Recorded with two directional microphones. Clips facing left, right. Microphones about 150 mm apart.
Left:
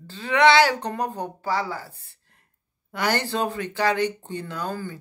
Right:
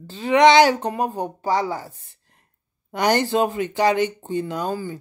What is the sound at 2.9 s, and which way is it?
Speech, 20° right (ahead or behind).